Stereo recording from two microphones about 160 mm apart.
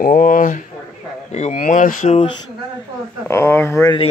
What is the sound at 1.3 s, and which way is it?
Speech, 45° left (ahead or behind).